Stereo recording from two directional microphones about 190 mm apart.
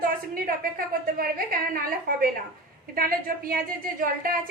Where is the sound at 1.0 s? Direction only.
50° right (ahead or behind).